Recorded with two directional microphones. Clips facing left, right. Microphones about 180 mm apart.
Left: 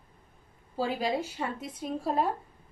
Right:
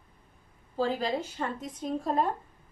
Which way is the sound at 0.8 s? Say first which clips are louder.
Right 1 dB; 10° left (ahead or behind).